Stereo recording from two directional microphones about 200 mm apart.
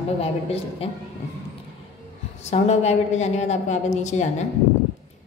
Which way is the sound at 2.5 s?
35° left (ahead or behind).